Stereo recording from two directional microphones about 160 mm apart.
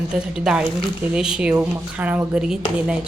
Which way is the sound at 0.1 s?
5° right (ahead or behind).